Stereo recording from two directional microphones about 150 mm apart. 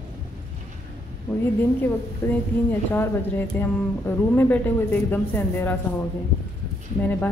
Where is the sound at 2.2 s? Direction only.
15° left (ahead or behind).